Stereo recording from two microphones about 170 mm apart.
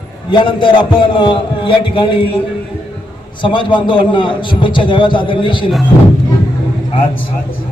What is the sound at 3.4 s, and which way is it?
A man's voice, 30° left (ahead or behind).